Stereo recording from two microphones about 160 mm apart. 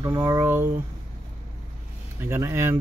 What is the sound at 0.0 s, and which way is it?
Speech, 25° right (ahead or behind).